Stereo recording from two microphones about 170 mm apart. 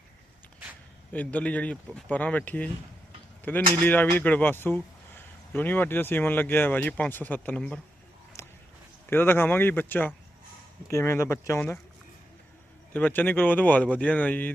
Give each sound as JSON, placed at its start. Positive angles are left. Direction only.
{"t": 1.1, "sound": "speech", "side_deg": 10}
{"t": 3.8, "sound": "speech", "side_deg": 10}
{"t": 8.4, "sound": "a sound", "side_deg": 15}
{"t": 9.0, "sound": "speech", "side_deg": 15}
{"t": 12.9, "sound": "speech", "side_deg": 10}